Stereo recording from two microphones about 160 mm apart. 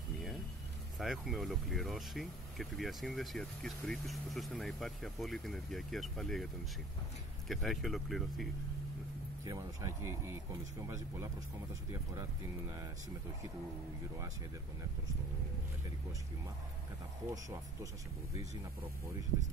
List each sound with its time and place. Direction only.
0.9 s speech: centre (ahead or behind)
9.4 s speech: 20° right (ahead or behind)